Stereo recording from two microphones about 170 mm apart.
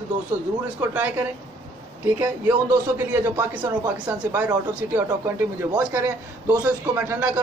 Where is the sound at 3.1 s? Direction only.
15° right (ahead or behind).